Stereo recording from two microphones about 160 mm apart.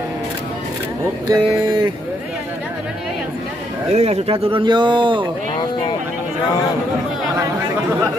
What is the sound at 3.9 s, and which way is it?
Speech, 40° right (ahead or behind).